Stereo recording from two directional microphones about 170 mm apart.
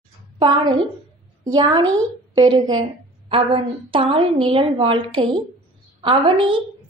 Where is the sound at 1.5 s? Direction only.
25° right (ahead or behind).